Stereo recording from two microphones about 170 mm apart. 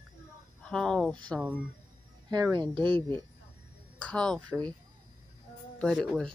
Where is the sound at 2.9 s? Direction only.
30° right (ahead or behind).